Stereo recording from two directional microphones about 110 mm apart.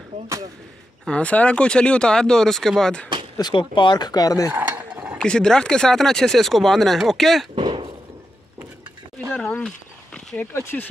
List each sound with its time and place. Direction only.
1.0 s speech: 10° left (ahead or behind)
3.3 s speech: 45° left (ahead or behind)
4.5 s mechanisms: 10° right (ahead or behind)
5.2 s speech: 10° left (ahead or behind)
7.5 s a sound: 50° right (ahead or behind)
9.3 s a sound: 15° left (ahead or behind)
10.5 s speech: 20° left (ahead or behind)